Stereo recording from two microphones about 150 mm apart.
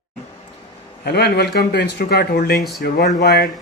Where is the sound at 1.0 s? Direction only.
90° left.